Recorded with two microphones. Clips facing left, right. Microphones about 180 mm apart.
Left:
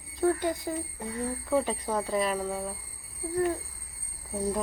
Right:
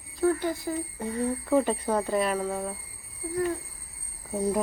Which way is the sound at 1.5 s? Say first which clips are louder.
Right 3 dB; centre (ahead or behind).